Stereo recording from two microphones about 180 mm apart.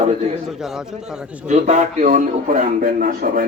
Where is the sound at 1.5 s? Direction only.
40° right (ahead or behind).